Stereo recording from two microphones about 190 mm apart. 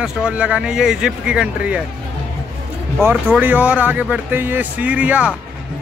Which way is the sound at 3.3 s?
10° right (ahead or behind).